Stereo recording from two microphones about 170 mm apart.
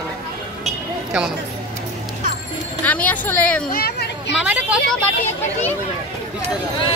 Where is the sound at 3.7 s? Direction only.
65° left (ahead or behind).